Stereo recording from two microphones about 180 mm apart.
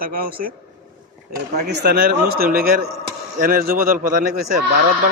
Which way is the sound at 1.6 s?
65° right (ahead or behind).